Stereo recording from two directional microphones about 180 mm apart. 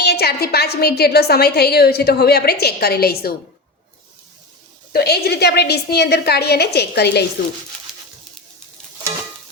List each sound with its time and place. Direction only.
0.0 s a woman's voice: 65° left (ahead or behind)
4.9 s a woman's voice: 60° left (ahead or behind)
7.9 s a sound: centre (ahead or behind)